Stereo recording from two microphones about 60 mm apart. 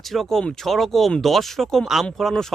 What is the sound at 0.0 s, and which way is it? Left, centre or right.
Speech, centre.